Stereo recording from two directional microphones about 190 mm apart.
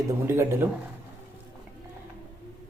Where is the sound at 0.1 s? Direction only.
15° right (ahead or behind).